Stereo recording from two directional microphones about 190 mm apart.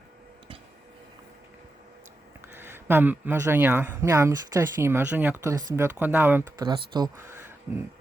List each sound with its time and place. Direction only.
2.6 s speech: 10° right (ahead or behind)
6.7 s speech: 20° right (ahead or behind)